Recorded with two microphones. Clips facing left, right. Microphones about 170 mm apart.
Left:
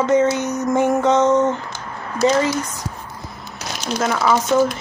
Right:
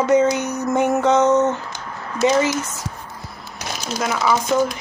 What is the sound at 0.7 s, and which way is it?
Speech, centre (ahead or behind).